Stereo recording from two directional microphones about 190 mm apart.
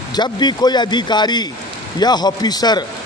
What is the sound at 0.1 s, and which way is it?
A man's voice, 25° left (ahead or behind).